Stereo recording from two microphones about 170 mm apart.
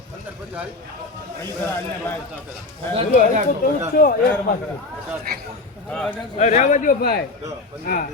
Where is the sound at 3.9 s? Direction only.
55° left (ahead or behind).